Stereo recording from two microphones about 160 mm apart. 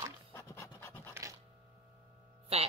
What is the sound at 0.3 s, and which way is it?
Pant, 20° left (ahead or behind).